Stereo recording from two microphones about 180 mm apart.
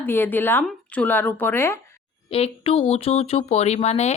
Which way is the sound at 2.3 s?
30° left (ahead or behind).